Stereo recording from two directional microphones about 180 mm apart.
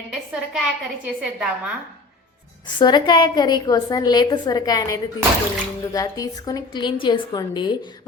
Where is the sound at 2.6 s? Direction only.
25° left (ahead or behind).